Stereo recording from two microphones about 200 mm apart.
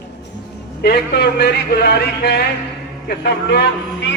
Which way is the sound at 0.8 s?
55° left (ahead or behind).